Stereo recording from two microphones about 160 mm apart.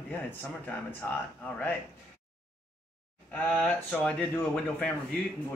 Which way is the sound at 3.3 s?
5° left (ahead or behind).